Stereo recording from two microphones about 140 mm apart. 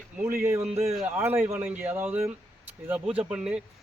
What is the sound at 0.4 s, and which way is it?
A man's voice, 20° right (ahead or behind).